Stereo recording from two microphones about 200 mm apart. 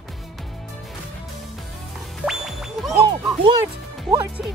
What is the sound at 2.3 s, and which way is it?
Music, centre (ahead or behind).